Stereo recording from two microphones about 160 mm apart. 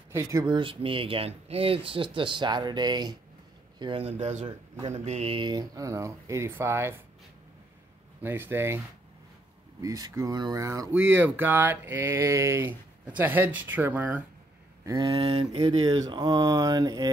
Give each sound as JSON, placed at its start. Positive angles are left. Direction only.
{"t": 0.1, "sound": "speech", "side_deg": -20}
{"t": 8.2, "sound": "speech", "side_deg": -15}
{"t": 14.9, "sound": "speech", "side_deg": -30}